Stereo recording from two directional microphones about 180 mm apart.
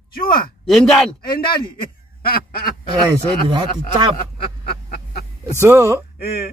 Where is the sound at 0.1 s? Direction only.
55° left (ahead or behind).